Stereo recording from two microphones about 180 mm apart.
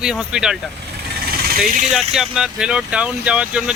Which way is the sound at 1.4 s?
50° right (ahead or behind).